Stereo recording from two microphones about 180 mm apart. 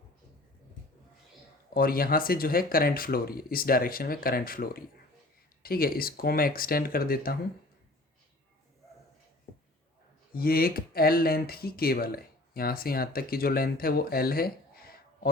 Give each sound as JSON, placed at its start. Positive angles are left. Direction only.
{"t": 1.7, "sound": "speech", "side_deg": 55}
{"t": 10.3, "sound": "speech", "side_deg": 55}